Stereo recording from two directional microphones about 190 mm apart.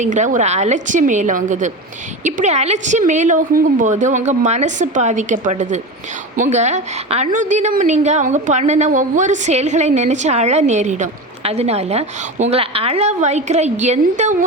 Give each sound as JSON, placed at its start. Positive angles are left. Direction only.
{"t": 0.0, "sound": "a woman's voice", "side_deg": -40}